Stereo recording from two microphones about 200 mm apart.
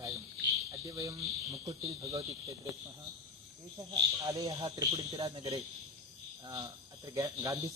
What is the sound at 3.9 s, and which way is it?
Speech, 15° right (ahead or behind).